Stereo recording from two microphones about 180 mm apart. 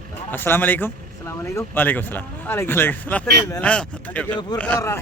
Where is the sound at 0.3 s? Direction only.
10° left (ahead or behind).